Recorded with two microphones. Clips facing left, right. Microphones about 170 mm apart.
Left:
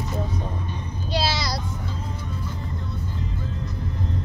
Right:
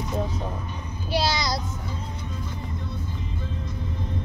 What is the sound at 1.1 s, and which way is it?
Child singing, 15° right (ahead or behind).